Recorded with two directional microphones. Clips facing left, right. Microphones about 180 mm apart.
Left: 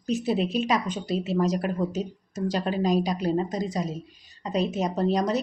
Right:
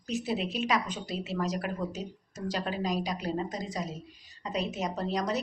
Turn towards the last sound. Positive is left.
turn(degrees=25)  # may be behind; listen again after turning